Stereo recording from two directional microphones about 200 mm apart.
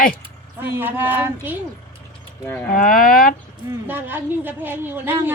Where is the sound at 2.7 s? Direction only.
40° left (ahead or behind).